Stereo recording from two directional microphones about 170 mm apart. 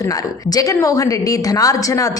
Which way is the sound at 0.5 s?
20° left (ahead or behind).